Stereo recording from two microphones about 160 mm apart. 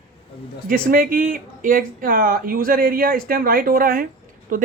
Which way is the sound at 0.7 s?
60° right (ahead or behind).